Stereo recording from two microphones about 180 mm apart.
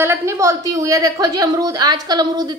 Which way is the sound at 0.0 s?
15° right (ahead or behind).